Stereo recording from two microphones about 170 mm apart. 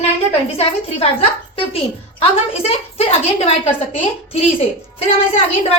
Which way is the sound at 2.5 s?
35° left (ahead or behind).